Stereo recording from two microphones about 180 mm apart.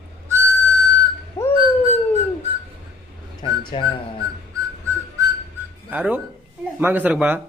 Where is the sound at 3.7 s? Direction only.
25° left (ahead or behind).